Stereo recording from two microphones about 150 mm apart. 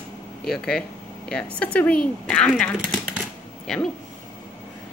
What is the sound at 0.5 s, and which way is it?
Speech, 5° left (ahead or behind).